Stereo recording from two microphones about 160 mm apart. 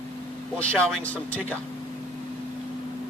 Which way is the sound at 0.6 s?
10° left (ahead or behind).